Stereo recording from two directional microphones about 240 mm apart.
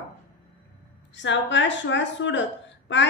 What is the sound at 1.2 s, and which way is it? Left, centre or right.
A woman's voice, left.